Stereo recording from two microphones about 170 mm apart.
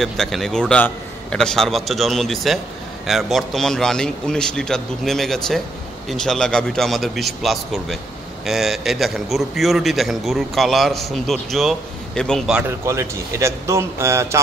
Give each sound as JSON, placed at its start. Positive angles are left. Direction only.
{"t": 0.0, "sound": "a man's voice", "side_deg": 0}